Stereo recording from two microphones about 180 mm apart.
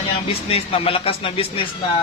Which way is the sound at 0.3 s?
30° left (ahead or behind).